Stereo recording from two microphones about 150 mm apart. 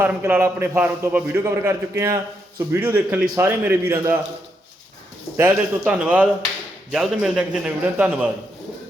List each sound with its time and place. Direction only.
0.0 s a man's voice: 15° right (ahead or behind)
5.4 s a man's voice: 10° right (ahead or behind)